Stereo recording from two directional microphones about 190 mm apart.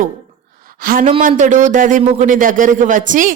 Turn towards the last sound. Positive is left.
turn(degrees=-45)  # may be behind; listen again after turning